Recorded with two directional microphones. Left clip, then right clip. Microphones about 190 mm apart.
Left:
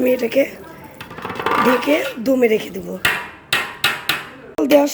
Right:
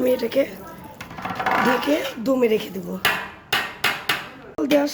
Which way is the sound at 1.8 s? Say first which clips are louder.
Left 4 dB; 5° left (ahead or behind).